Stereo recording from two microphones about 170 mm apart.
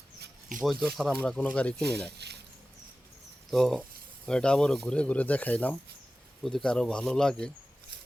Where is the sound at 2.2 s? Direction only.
80° right.